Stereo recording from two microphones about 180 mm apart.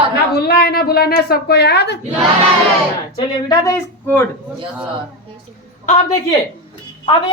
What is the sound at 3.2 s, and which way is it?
Speech, 20° left (ahead or behind).